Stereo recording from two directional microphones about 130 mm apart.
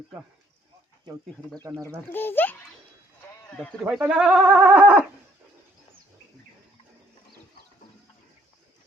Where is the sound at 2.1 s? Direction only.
15° left (ahead or behind).